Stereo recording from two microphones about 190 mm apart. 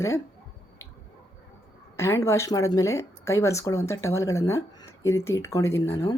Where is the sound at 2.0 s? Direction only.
15° left (ahead or behind).